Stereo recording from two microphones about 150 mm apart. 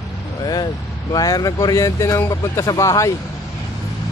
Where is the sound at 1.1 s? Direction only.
25° left (ahead or behind).